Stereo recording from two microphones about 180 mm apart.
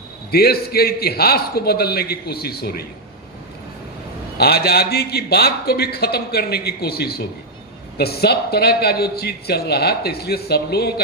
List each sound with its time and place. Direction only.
0.3 s a man's voice: 60° left (ahead or behind)
4.4 s a man's voice: 60° left (ahead or behind)